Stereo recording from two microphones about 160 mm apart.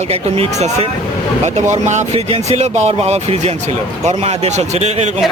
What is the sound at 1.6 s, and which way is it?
A man's voice, 45° right (ahead or behind).